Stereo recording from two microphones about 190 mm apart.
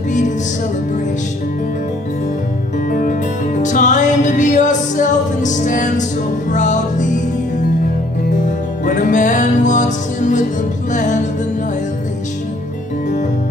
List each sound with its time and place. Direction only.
2.9 s music: 45° left (ahead or behind)
8.5 s music: 40° left (ahead or behind)